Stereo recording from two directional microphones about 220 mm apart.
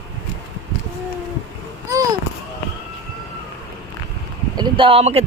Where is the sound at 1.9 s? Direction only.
15° right (ahead or behind).